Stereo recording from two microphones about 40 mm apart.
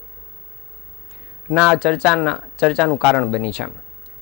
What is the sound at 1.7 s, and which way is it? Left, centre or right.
Speech, centre.